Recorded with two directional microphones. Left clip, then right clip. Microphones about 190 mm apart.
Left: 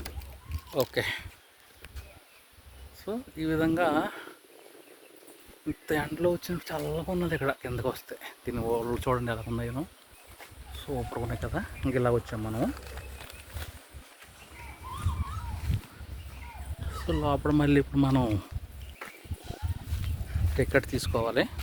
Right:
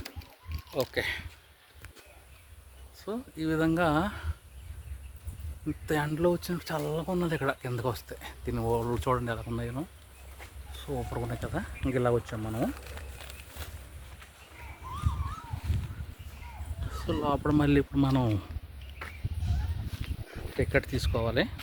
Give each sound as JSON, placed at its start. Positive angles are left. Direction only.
{"t": 0.9, "sound": "speech", "side_deg": 5}
{"t": 3.0, "sound": "speech", "side_deg": -10}
{"t": 5.6, "sound": "speech", "side_deg": -5}
{"t": 6.1, "sound": "speech", "side_deg": -20}
{"t": 7.3, "sound": "speech", "side_deg": -10}
{"t": 13.1, "sound": "a sound", "side_deg": -50}
{"t": 16.9, "sound": "speech", "side_deg": -10}
{"t": 20.6, "sound": "speech", "side_deg": 10}